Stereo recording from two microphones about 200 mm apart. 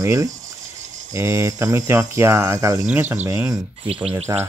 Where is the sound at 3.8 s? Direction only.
30° right (ahead or behind).